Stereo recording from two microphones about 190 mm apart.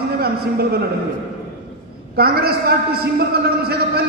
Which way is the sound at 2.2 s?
55° right (ahead or behind).